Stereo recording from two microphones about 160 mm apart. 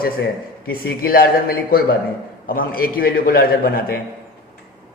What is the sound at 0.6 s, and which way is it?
A man's voice, 65° left (ahead or behind).